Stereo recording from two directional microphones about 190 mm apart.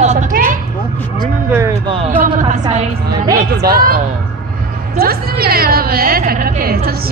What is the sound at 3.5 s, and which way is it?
A woman's voice, 50° right (ahead or behind).